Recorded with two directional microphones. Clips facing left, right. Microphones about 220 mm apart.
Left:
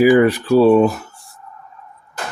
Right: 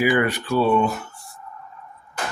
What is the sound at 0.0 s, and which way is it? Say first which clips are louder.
Speech: left 9 dB; 40° left (ahead or behind).